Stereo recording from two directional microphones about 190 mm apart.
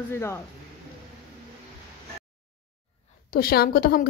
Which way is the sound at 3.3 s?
50° left (ahead or behind).